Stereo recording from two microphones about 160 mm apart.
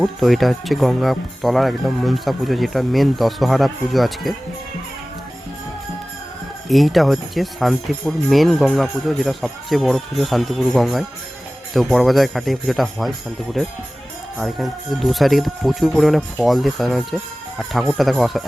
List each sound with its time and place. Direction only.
0.0 s speech: centre (ahead or behind)
6.7 s speech: centre (ahead or behind)